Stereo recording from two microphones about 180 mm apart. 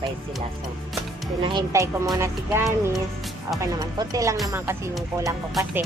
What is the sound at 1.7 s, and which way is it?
Speech, 20° right (ahead or behind).